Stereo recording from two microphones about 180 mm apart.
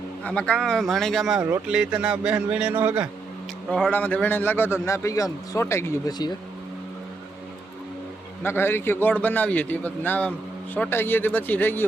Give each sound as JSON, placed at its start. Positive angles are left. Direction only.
{"t": 0.3, "sound": "a man's voice", "side_deg": 5}
{"t": 1.4, "sound": "speech", "side_deg": -15}
{"t": 1.6, "sound": "a man's voice", "side_deg": -5}
{"t": 3.7, "sound": "a man's voice", "side_deg": 5}
{"t": 8.4, "sound": "a man's voice", "side_deg": 10}